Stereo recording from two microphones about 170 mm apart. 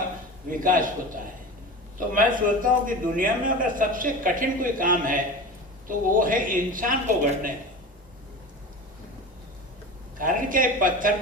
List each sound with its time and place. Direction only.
0.6 s a man's voice: 50° right (ahead or behind)
2.1 s a man's voice: 50° right (ahead or behind)
10.2 s speech: 55° right (ahead or behind)